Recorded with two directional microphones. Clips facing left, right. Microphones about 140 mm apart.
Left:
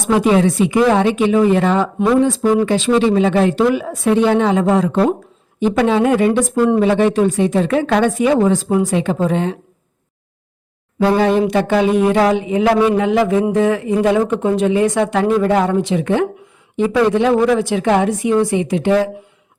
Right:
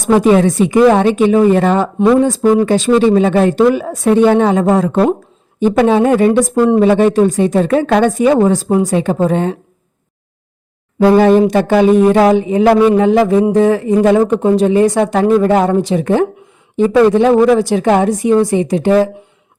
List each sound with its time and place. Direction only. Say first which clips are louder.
0.0 s speech: right 4 dB; 40° right (ahead or behind)
11.0 s speech: right 6 dB; 40° right (ahead or behind)